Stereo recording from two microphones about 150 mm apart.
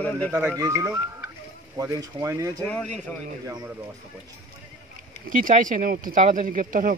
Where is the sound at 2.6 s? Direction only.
10° left (ahead or behind).